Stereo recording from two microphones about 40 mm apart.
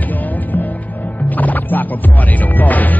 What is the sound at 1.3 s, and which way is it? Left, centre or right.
Music, left.